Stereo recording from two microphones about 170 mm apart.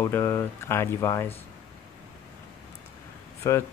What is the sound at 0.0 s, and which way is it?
Speech, 15° left (ahead or behind).